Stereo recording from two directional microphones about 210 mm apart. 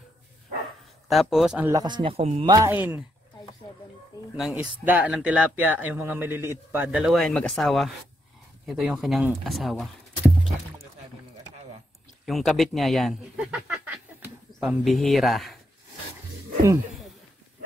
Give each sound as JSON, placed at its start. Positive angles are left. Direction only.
{"t": 1.0, "sound": "speech", "side_deg": 0}
{"t": 1.7, "sound": "speech", "side_deg": -20}
{"t": 3.6, "sound": "music", "side_deg": 25}
{"t": 4.4, "sound": "a man's voice", "side_deg": -5}
{"t": 12.3, "sound": "speech", "side_deg": 0}